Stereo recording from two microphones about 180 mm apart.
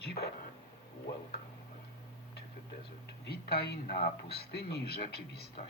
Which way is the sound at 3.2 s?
65° left (ahead or behind).